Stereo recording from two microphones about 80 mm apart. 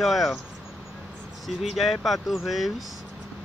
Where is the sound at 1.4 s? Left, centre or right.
Centre.